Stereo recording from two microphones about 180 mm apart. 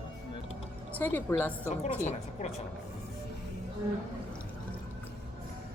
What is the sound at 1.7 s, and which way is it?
Speech, 40° left (ahead or behind).